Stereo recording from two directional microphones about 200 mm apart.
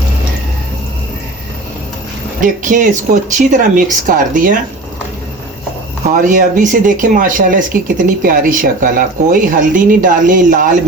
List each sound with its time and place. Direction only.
2.4 s speech: 40° right (ahead or behind)
6.1 s speech: 40° right (ahead or behind)